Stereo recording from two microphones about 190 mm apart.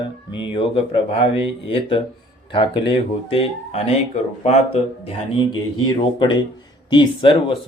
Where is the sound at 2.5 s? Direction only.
25° left (ahead or behind).